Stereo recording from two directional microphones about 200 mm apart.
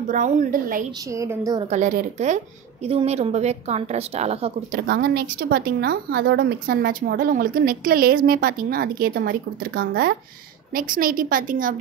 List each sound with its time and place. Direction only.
0.1 s a woman's voice: 40° right (ahead or behind)
1.1 s a woman's voice: 15° right (ahead or behind)
1.7 s a woman's voice: 40° right (ahead or behind)
4.7 s a woman's voice: 55° right (ahead or behind)